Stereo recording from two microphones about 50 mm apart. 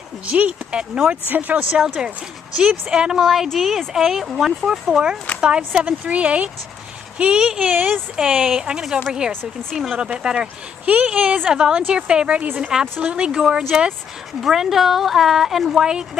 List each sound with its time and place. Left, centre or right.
0.3 s speech: right
1.2 s speech: right; by 5.1 s centre
5.7 s speech: right
7.2 s speech: centre
7.7 s speech: right
8.2 s speech: centre